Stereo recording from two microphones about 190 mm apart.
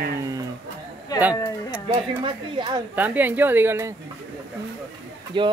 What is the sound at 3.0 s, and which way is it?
Speech, 10° right (ahead or behind).